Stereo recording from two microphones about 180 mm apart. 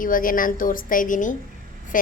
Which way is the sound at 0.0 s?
50° left (ahead or behind).